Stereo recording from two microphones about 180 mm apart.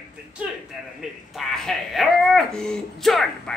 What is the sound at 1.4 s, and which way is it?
Speech, centre (ahead or behind).